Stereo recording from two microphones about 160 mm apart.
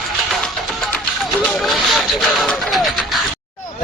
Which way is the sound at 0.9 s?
5° left (ahead or behind).